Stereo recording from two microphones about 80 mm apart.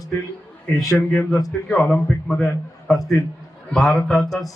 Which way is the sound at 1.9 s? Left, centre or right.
Centre.